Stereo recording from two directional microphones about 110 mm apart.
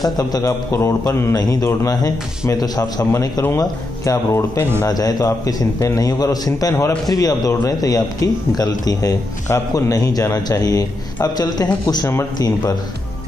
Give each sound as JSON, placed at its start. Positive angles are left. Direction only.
{"t": 0.2, "sound": "a man's voice", "side_deg": 30}